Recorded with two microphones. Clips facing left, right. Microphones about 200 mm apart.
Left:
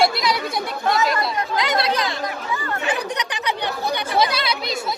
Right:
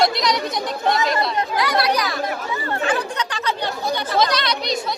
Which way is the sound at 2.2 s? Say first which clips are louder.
Right 2 dB; 25° right (ahead or behind).